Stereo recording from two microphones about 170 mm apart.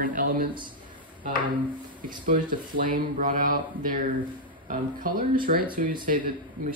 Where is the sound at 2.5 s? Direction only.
55° right (ahead or behind).